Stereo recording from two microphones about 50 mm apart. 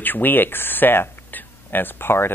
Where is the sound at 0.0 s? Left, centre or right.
Left.